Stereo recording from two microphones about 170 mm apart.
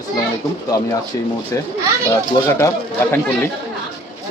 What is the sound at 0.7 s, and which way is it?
Speech, 20° left (ahead or behind).